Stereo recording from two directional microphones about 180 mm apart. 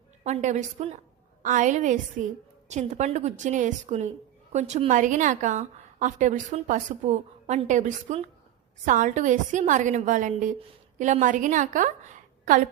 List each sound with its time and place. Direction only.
0.3 s a woman's voice: 40° right (ahead or behind)